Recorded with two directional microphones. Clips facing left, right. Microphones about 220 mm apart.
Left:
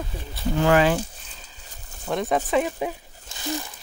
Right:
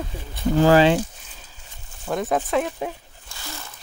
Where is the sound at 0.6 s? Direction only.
30° right (ahead or behind).